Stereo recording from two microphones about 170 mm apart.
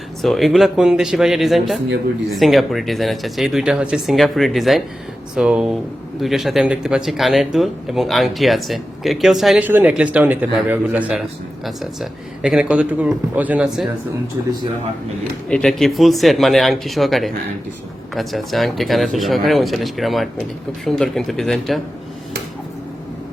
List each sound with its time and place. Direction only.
0.2 s speech: centre (ahead or behind); by 14.5 s 15° right (ahead or behind)
15.4 s speech: 5° left (ahead or behind)